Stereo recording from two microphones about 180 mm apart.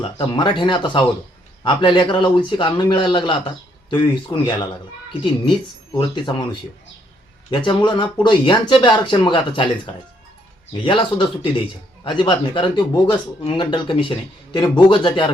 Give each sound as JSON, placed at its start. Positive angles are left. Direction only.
{"t": 0.0, "sound": "speech", "side_deg": 25}
{"t": 6.0, "sound": "speech", "side_deg": 25}